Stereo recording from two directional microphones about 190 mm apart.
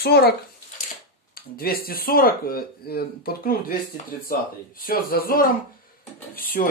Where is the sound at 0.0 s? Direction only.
55° left (ahead or behind).